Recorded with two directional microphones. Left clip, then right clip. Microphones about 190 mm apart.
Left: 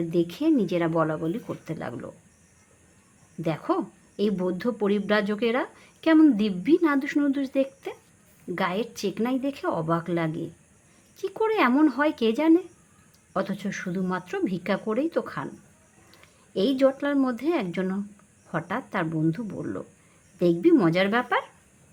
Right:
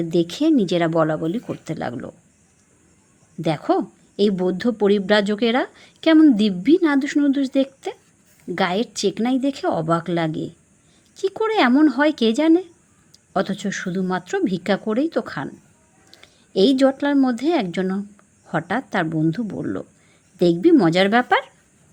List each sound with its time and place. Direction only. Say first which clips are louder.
0.1 s speech: right 6 dB; 25° right (ahead or behind)
3.4 s a woman's voice: right 6 dB; 20° right (ahead or behind)